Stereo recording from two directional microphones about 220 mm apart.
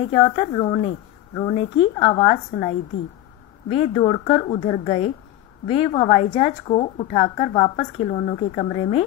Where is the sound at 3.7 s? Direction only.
25° left (ahead or behind).